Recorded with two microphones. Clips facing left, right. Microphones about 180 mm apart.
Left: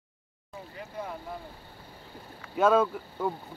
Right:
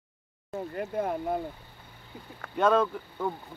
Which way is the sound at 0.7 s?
55° right (ahead or behind).